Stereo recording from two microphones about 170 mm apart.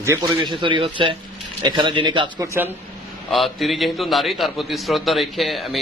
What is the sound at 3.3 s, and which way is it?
A man's voice, centre (ahead or behind).